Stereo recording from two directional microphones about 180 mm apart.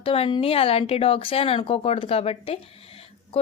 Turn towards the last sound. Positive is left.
turn(degrees=35)  # may be behind; listen again after turning